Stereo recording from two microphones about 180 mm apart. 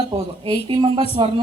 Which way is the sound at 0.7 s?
25° right (ahead or behind).